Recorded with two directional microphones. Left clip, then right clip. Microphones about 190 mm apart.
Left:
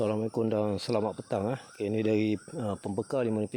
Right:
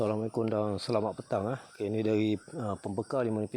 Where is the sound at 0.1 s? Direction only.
25° left (ahead or behind).